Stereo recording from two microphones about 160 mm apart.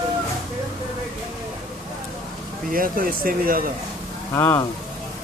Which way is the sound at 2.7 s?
60° right (ahead or behind).